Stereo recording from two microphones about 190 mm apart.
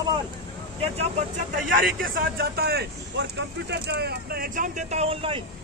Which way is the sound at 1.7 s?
50° right (ahead or behind).